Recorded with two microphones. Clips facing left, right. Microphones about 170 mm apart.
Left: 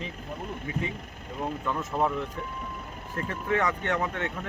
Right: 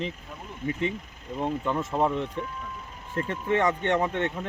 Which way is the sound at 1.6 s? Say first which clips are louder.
Right 1 dB; 25° right (ahead or behind).